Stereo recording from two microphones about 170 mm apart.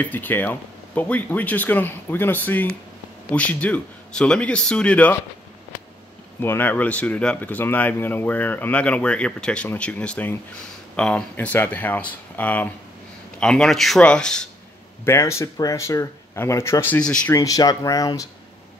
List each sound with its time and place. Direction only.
0.0 s speech: 10° left (ahead or behind)
6.4 s speech: 10° left (ahead or behind)
15.0 s speech: 15° left (ahead or behind)
17.3 s speech: 20° left (ahead or behind)